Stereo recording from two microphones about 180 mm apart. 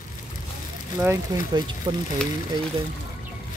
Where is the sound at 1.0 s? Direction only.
15° right (ahead or behind).